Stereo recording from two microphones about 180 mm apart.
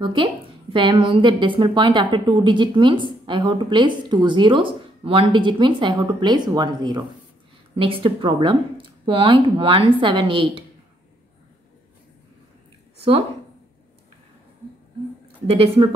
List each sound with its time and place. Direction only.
0.0 s a woman's voice: 30° right (ahead or behind)
12.9 s a sound: 35° right (ahead or behind)
15.4 s speech: 30° right (ahead or behind)